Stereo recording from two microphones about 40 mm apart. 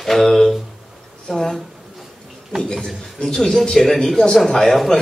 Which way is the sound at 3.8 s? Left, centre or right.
Centre.